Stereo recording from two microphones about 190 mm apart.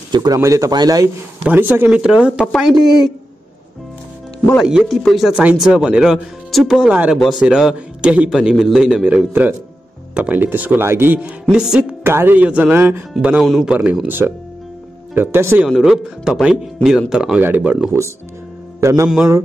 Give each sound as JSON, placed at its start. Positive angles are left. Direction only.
{"t": 0.1, "sound": "speech", "side_deg": -20}
{"t": 4.6, "sound": "a man's voice", "side_deg": 0}
{"t": 19.0, "sound": "speech", "side_deg": -5}